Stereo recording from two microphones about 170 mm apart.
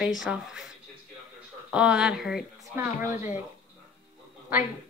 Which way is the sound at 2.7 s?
15° right (ahead or behind).